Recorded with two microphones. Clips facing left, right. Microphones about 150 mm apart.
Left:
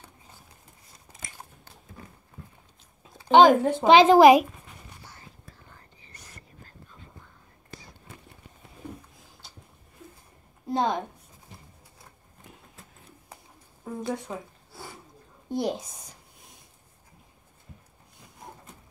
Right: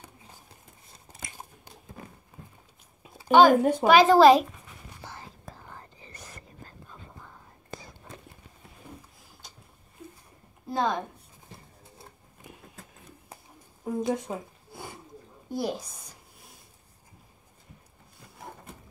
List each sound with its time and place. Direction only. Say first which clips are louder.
0.9 s biting: right 1 dB; 20° right (ahead or behind)
3.3 s a woman's voice: left 1 dB; 20° left (ahead or behind)
5.0 s whispering: right 6 dB; 90° right
10.7 s a sound: left 2 dB; 20° left (ahead or behind)
13.8 s a sound: right 4 dB; 20° right (ahead or behind)
14.7 s snort: right 3 dB; 20° right (ahead or behind)
15.5 s a woman's voice: left 2 dB; 20° left (ahead or behind)